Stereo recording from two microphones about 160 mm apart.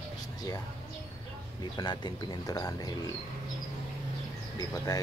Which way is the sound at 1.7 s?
25° left (ahead or behind).